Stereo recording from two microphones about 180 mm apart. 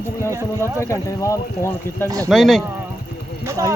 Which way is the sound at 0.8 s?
15° left (ahead or behind).